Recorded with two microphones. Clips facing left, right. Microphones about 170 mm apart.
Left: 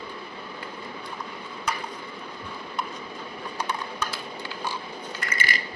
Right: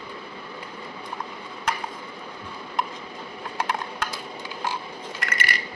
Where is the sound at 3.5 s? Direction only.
90° right.